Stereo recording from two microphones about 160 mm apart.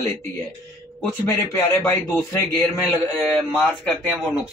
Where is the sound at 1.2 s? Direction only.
15° left (ahead or behind).